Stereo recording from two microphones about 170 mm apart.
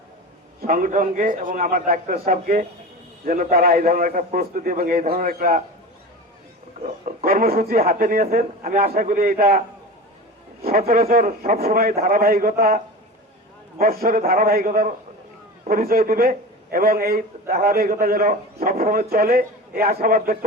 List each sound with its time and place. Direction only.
0.6 s a man's voice: 55° right (ahead or behind)
6.8 s a man's voice: 45° right (ahead or behind)
7.3 s a man's voice: 60° right (ahead or behind)
10.7 s a man's voice: 60° right (ahead or behind)